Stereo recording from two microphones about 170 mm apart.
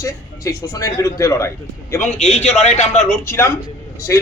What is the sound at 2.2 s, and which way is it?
Speech, 40° left (ahead or behind).